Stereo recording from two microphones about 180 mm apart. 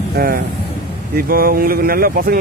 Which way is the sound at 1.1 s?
55° right (ahead or behind).